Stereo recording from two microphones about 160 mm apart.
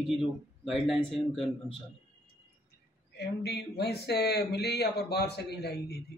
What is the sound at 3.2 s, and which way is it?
Speech, 90° left.